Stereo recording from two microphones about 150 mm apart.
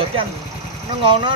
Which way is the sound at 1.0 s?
35° right (ahead or behind).